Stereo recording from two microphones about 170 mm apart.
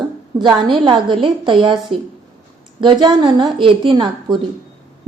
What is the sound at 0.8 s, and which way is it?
A woman's voice, 30° right (ahead or behind).